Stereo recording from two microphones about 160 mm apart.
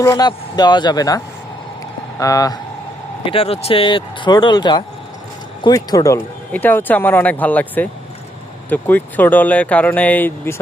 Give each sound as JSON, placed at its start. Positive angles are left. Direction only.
{"t": 0.0, "sound": "speech", "side_deg": 20}
{"t": 3.2, "sound": "speech", "side_deg": 35}